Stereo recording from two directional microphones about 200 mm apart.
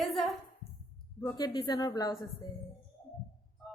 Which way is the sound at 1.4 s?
20° left (ahead or behind).